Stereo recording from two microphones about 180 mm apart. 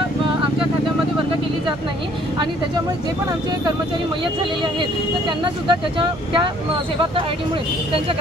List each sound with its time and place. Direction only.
5.4 s speech: 25° right (ahead or behind)